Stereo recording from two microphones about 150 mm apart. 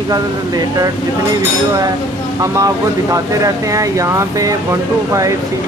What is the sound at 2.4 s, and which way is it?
Speech, 20° right (ahead or behind).